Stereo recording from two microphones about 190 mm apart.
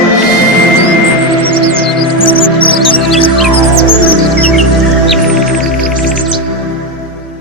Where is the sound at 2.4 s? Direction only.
25° left (ahead or behind).